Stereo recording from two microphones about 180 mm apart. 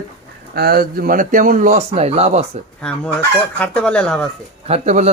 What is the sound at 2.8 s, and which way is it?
Speech, 5° left (ahead or behind).